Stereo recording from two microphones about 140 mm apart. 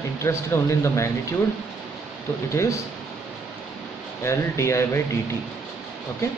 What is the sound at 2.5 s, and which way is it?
Speech, 20° left (ahead or behind).